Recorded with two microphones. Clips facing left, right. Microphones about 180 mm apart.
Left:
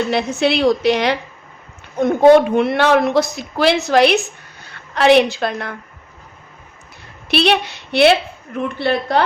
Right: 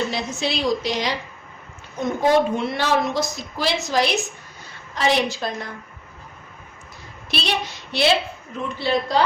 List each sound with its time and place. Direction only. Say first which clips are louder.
0.1 s a woman's voice: left 8 dB; 60° left (ahead or behind)
7.3 s a woman's voice: left 10 dB; 65° left (ahead or behind)